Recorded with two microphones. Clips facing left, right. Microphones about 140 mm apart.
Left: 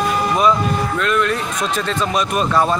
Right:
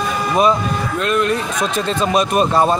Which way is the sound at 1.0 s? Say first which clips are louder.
Right 3 dB; 25° right (ahead or behind).